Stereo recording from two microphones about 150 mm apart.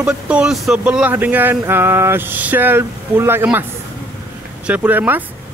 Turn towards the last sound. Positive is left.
turn(degrees=-10)  # may be behind; listen again after turning